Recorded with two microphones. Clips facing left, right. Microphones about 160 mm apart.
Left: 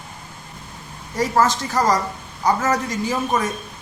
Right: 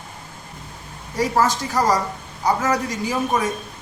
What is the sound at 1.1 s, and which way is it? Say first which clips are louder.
A woman's voice: left 1 dB; 10° right (ahead or behind).